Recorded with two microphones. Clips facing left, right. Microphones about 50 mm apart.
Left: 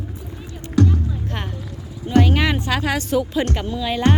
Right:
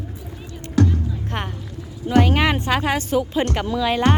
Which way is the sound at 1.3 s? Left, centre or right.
Right.